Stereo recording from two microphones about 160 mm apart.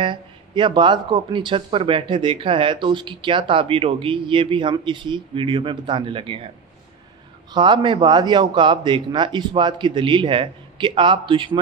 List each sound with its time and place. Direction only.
0.0 s speech: 30° right (ahead or behind)
7.5 s a man's voice: 30° right (ahead or behind)